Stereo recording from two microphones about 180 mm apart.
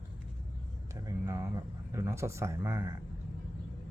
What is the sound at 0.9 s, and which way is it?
Speech, 20° right (ahead or behind).